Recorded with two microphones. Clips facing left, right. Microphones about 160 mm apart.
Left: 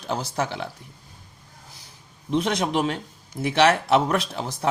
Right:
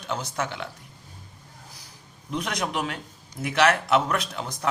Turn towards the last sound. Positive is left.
turn(degrees=30)  # may be behind; listen again after turning